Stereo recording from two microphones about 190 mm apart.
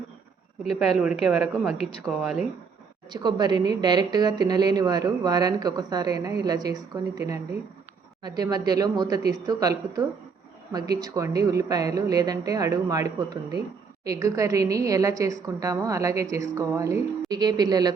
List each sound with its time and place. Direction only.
0.9 s a woman's voice: centre (ahead or behind)
3.1 s a woman's voice: 20° right (ahead or behind)